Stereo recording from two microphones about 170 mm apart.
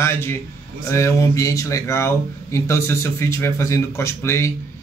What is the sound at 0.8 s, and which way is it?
Speech, 15° left (ahead or behind).